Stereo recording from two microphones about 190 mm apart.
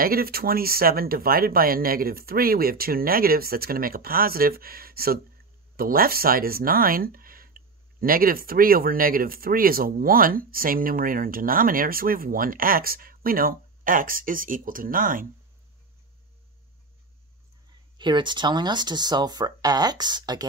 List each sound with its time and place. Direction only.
0.0 s speech: 50° right (ahead or behind)
17.9 s speech: 25° right (ahead or behind)